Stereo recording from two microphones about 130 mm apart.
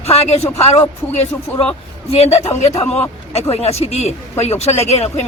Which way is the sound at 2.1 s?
50° left (ahead or behind).